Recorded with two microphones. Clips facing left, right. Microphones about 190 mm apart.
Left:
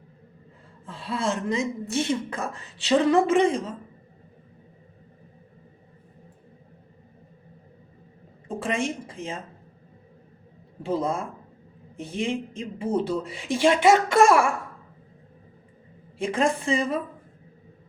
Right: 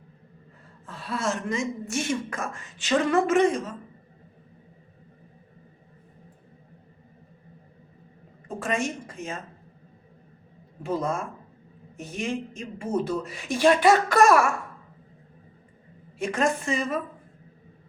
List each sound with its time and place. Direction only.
0.9 s a woman's voice: 30° left (ahead or behind)
8.4 s speech: 30° left (ahead or behind)
10.8 s a woman's voice: 30° left (ahead or behind)
16.1 s speech: 30° left (ahead or behind)